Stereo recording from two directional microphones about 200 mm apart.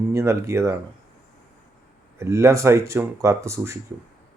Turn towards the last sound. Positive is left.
turn(degrees=-15)  # may be behind; listen again after turning